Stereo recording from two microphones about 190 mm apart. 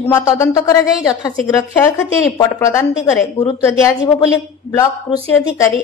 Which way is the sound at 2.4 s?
15° left (ahead or behind).